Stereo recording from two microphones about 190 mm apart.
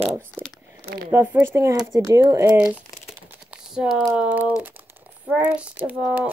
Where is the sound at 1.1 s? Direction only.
10° right (ahead or behind).